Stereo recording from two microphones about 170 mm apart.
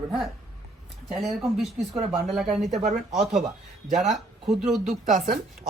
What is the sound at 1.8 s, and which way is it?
Speech, 40° right (ahead or behind).